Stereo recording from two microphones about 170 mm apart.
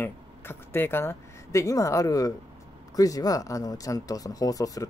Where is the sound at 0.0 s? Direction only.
10° left (ahead or behind).